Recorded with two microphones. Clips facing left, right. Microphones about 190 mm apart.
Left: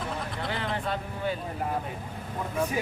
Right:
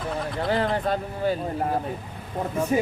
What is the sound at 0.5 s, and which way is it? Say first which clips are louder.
Speech: right 8 dB; 40° right (ahead or behind).